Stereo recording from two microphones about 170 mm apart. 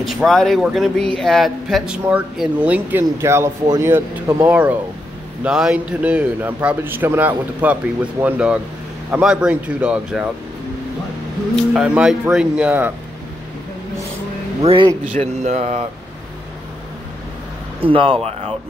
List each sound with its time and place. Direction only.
0.0 s a man's voice: centre (ahead or behind)
11.5 s speech: 5° right (ahead or behind)
14.6 s speech: 30° right (ahead or behind)
17.7 s speech: 30° right (ahead or behind)